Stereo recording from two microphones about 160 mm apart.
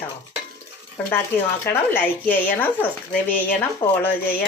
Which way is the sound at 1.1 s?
15° left (ahead or behind).